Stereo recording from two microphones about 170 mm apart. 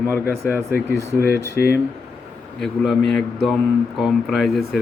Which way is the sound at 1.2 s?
65° left (ahead or behind).